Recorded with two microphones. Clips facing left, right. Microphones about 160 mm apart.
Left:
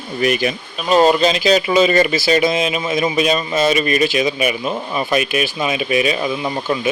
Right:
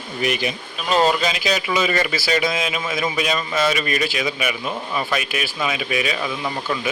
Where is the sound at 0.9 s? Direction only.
20° left (ahead or behind).